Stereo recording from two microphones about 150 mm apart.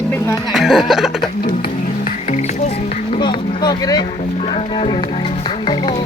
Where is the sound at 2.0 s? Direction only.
50° left (ahead or behind).